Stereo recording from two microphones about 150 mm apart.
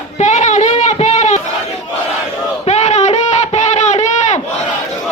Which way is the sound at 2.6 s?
45° left (ahead or behind).